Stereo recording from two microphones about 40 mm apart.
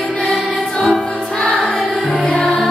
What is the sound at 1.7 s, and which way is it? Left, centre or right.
Music, centre.